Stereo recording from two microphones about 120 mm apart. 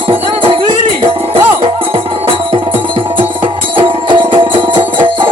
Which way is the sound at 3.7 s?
45° right (ahead or behind).